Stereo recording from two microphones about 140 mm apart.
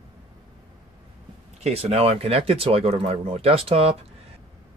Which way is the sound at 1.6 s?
50° right (ahead or behind).